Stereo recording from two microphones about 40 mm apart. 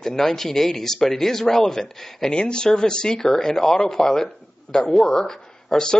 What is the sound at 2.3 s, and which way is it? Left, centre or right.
Speech, left.